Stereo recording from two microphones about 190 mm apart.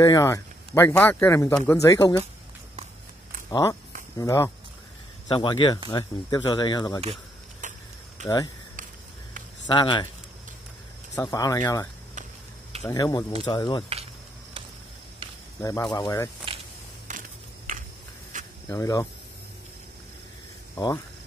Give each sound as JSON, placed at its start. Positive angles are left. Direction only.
{"t": 0.0, "sound": "a man's voice", "side_deg": 15}
{"t": 3.4, "sound": "a man's voice", "side_deg": 15}
{"t": 7.6, "sound": "a sound", "side_deg": -40}
{"t": 8.2, "sound": "speech", "side_deg": -40}
{"t": 9.7, "sound": "speech", "side_deg": 25}
{"t": 11.2, "sound": "a man's voice", "side_deg": 15}
{"t": 12.9, "sound": "speech", "side_deg": 20}
{"t": 15.6, "sound": "a man's voice", "side_deg": 15}
{"t": 16.5, "sound": "a sound", "side_deg": -25}
{"t": 17.1, "sound": "a sound", "side_deg": -45}
{"t": 18.3, "sound": "cricket", "side_deg": -40}
{"t": 18.7, "sound": "a man's voice", "side_deg": 15}